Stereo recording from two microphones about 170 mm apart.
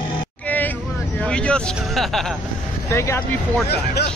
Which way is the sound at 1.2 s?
5° left (ahead or behind).